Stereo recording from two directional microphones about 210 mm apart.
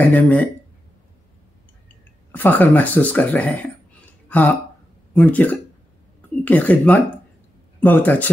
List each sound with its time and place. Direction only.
0.1 s speech: 5° left (ahead or behind)
2.3 s speech: 10° left (ahead or behind)
4.3 s a sound: 10° left (ahead or behind)
5.1 s speech: 5° left (ahead or behind)